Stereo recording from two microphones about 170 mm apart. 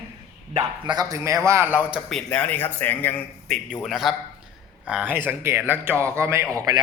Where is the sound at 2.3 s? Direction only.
10° left (ahead or behind).